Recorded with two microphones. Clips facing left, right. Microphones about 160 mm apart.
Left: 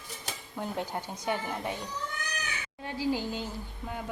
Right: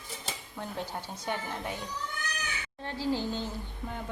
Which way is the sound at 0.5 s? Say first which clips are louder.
Left 4 dB; 15° left (ahead or behind).